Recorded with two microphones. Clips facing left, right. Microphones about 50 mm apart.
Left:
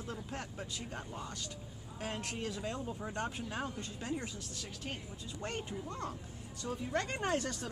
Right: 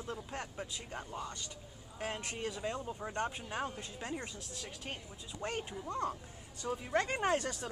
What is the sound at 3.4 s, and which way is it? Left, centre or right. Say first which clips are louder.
A woman's voice: right 1 dB; centre.